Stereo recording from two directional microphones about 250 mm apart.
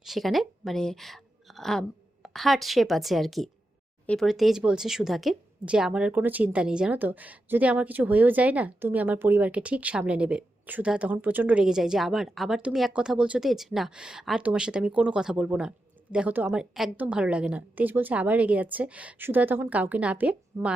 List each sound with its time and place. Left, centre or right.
0.0 s speech: centre